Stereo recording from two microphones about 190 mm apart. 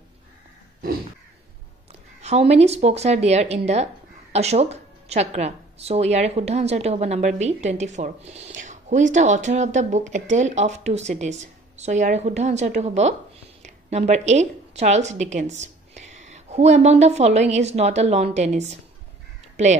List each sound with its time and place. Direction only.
2.2 s a woman's voice: 35° right (ahead or behind)